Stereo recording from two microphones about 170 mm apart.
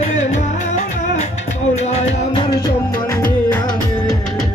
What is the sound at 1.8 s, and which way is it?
Music, 40° left (ahead or behind).